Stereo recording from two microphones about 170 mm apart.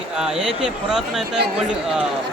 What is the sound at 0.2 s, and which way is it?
A man's voice, 5° right (ahead or behind).